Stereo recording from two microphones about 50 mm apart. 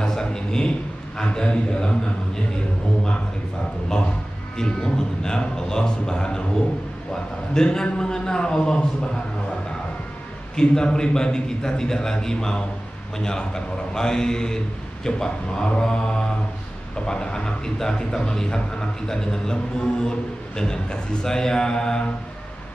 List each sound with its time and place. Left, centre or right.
0.0 s a man's voice: centre
4.6 s a man's voice: centre
7.5 s a man's voice: centre
10.5 s a man's voice: centre